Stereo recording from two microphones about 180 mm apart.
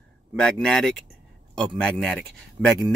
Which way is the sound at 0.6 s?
5° left (ahead or behind).